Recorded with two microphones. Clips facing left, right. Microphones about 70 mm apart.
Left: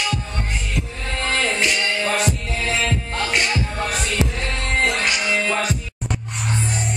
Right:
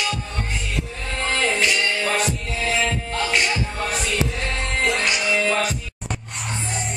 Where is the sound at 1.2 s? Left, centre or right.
Centre.